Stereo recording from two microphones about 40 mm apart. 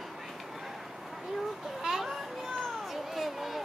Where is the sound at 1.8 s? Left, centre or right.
Centre.